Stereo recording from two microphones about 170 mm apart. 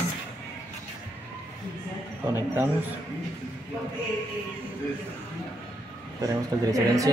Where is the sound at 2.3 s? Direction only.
10° right (ahead or behind).